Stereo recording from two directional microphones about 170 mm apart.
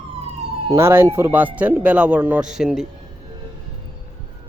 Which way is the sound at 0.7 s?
15° right (ahead or behind).